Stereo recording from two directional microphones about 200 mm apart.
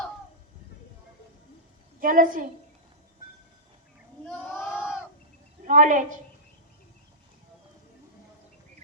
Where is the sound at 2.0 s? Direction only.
40° right (ahead or behind).